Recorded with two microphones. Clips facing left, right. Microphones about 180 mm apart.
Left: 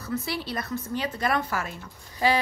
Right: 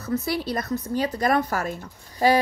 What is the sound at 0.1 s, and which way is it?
Speech, 40° right (ahead or behind).